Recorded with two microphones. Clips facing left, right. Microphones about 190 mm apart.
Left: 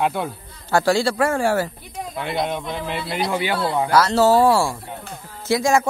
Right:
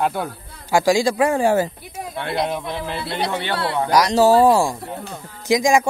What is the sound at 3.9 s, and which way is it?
Speech, 15° right (ahead or behind).